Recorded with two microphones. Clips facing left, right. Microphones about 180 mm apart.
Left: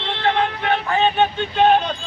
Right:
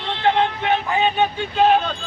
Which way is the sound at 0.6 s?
20° right (ahead or behind).